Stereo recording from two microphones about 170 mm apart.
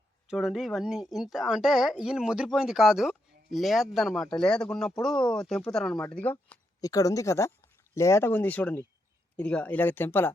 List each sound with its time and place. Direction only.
0.3 s speech: centre (ahead or behind)
6.5 s a sound: 10° left (ahead or behind)
6.8 s speech: 20° left (ahead or behind)